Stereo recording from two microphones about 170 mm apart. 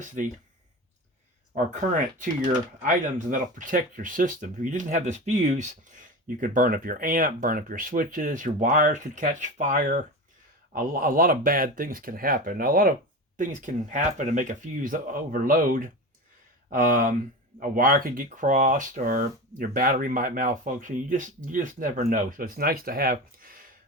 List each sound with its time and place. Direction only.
0.0 s speech: 50° right (ahead or behind)
1.5 s speech: 50° right (ahead or behind)